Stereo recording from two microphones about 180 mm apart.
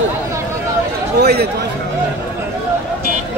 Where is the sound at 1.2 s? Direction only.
60° right (ahead or behind).